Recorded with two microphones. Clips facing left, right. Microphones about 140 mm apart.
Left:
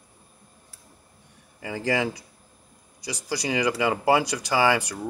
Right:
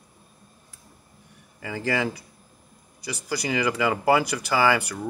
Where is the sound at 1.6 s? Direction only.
25° left (ahead or behind).